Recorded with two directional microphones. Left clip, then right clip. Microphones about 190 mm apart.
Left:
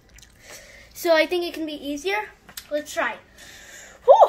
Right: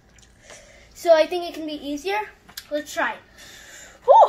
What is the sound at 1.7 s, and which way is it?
Speech, 15° left (ahead or behind).